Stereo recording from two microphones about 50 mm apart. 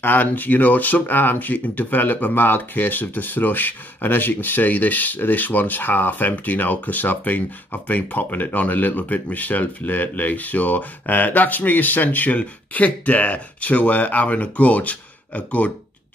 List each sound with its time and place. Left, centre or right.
0.0 s speech: left